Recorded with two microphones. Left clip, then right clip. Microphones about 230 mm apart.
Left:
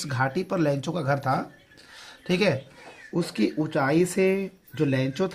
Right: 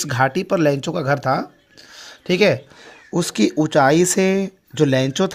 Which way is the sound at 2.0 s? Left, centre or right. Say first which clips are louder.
Right 8 dB; right.